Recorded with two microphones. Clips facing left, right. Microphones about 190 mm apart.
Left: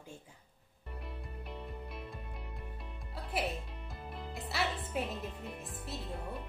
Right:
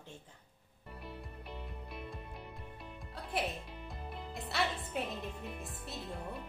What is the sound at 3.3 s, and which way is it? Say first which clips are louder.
Music: left 1 dB; centre (ahead or behind).